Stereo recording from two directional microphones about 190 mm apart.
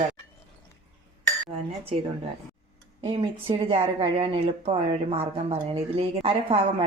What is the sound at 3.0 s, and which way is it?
Speech, 25° right (ahead or behind).